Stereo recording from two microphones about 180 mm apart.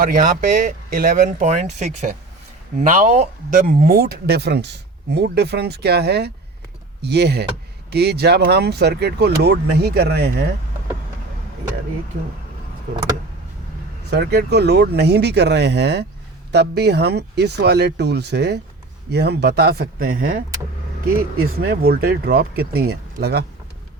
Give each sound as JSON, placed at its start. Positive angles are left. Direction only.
{"t": 0.0, "sound": "speech", "side_deg": -50}
{"t": 14.0, "sound": "speech", "side_deg": -65}